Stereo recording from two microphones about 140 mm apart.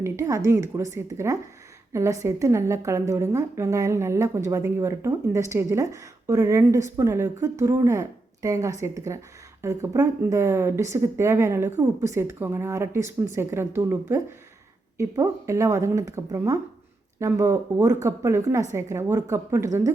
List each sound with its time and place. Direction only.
0.0 s a woman's voice: 20° right (ahead or behind)